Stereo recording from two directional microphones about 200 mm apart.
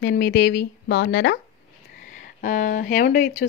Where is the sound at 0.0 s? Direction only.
50° left (ahead or behind).